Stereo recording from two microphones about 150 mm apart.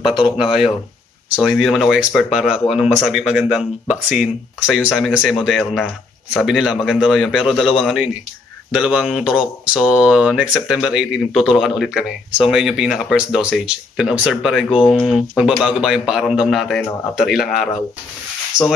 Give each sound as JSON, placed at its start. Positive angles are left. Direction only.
{"t": 0.0, "sound": "speech", "side_deg": -5}
{"t": 18.5, "sound": "speech", "side_deg": -30}